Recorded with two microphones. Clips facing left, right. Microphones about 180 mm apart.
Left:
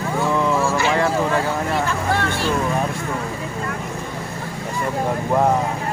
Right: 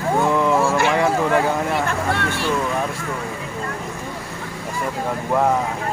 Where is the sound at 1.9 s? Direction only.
60° right (ahead or behind).